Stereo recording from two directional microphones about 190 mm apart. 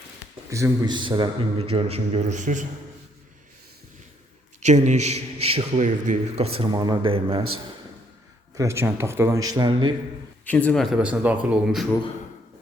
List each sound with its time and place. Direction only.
0.5 s a man's voice: 15° right (ahead or behind); by 2.6 s 40° right (ahead or behind)
4.6 s a man's voice: 40° right (ahead or behind)
8.5 s speech: 15° right (ahead or behind)
9.5 s a man's voice: 25° right (ahead or behind)
10.4 s speech: 10° left (ahead or behind)